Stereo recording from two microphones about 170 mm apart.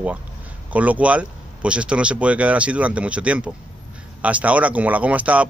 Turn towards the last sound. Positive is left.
turn(degrees=-10)  # may be behind; listen again after turning